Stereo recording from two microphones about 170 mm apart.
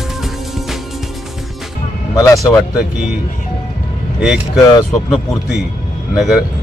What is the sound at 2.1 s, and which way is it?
Speech, 20° left (ahead or behind).